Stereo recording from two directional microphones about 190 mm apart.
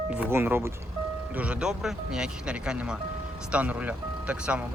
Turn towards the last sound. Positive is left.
turn(degrees=-5)  # may be behind; listen again after turning